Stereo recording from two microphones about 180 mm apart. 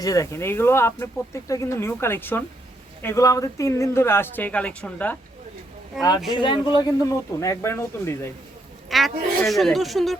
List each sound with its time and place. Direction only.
0.0 s speech: 20° left (ahead or behind)
6.3 s speech: 25° left (ahead or behind)
8.9 s speech: centre (ahead or behind)